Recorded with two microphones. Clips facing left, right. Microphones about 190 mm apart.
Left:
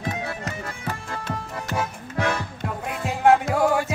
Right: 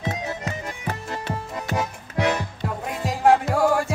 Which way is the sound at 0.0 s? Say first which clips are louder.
Right 1 dB; 20° right (ahead or behind).